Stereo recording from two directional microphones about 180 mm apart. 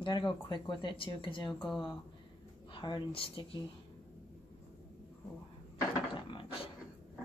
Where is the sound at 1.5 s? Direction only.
Centre (ahead or behind).